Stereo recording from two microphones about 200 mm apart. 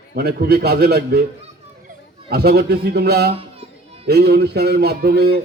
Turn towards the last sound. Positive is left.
turn(degrees=-50)  # may be behind; listen again after turning